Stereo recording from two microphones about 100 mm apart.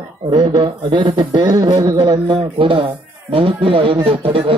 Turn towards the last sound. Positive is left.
turn(degrees=-70)  # may be behind; listen again after turning